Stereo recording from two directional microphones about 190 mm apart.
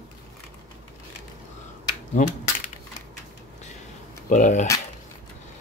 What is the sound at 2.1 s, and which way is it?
Coin, 40° left (ahead or behind).